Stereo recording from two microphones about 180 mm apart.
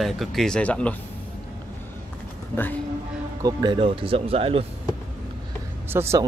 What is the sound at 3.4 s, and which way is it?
Speech, 25° right (ahead or behind).